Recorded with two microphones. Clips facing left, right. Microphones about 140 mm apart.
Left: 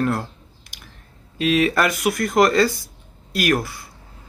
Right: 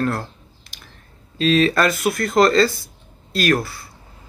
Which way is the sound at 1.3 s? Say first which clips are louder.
Right 2 dB; 15° left (ahead or behind).